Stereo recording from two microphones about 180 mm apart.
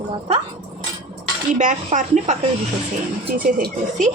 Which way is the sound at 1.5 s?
45° right (ahead or behind).